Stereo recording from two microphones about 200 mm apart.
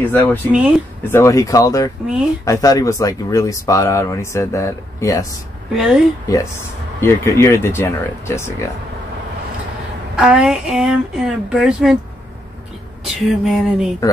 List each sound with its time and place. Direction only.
0.1 s speech: 10° left (ahead or behind)
0.5 s speech: 5° right (ahead or behind)
1.0 s speech: 15° left (ahead or behind)
5.8 s speech: centre (ahead or behind)
7.0 s speech: 15° left (ahead or behind)
10.1 s speech: 5° right (ahead or behind)
13.0 s speech: centre (ahead or behind)